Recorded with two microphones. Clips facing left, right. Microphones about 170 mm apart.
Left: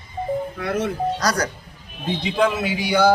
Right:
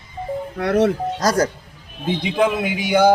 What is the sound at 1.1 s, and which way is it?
Speech, 25° right (ahead or behind).